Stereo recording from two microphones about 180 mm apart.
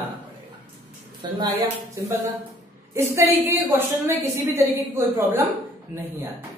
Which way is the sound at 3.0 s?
15° right (ahead or behind).